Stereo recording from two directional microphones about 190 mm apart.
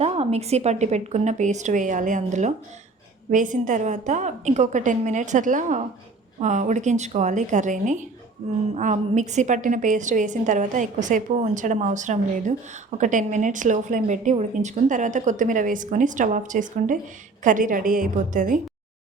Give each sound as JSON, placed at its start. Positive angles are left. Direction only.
{"t": 0.0, "sound": "a woman's voice", "side_deg": -35}